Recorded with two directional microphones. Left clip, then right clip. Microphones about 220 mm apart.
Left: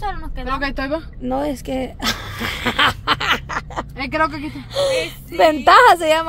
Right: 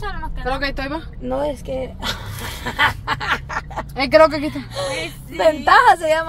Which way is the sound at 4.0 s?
40° right (ahead or behind).